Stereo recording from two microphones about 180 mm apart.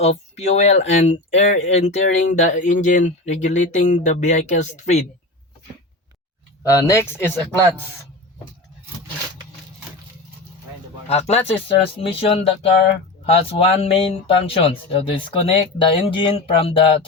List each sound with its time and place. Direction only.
0.0 s speech: 35° left (ahead or behind)
6.6 s a man's voice: 15° left (ahead or behind)
11.1 s speech: 35° left (ahead or behind)